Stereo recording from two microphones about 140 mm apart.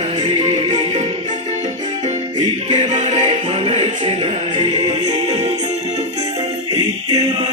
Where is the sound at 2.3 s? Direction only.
35° right (ahead or behind).